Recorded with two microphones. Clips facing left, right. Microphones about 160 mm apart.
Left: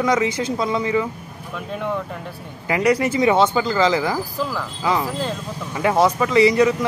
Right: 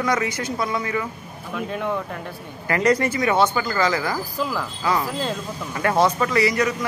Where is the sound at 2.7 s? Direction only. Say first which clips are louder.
Left 1 dB; 10° left (ahead or behind).